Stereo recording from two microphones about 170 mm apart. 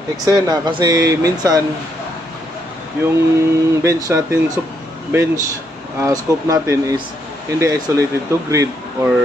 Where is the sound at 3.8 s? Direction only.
15° right (ahead or behind).